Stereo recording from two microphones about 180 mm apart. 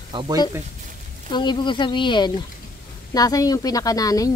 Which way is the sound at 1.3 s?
25° left (ahead or behind).